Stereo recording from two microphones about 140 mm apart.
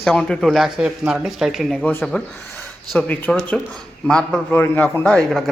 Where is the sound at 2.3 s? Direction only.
15° left (ahead or behind).